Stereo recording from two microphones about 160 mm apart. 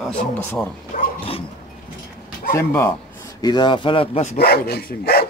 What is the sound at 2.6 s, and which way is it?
Speech, 15° left (ahead or behind).